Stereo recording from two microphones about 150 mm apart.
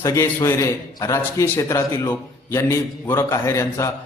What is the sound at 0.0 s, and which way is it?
A man's voice, 20° left (ahead or behind).